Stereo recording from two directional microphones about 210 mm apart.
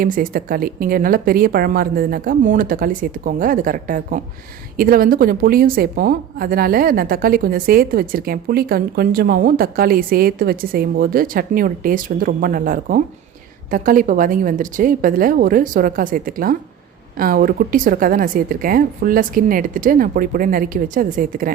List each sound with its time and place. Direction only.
0.0 s a woman's voice: 40° right (ahead or behind)